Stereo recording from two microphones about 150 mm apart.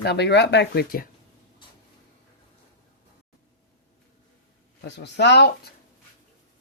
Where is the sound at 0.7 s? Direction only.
80° left.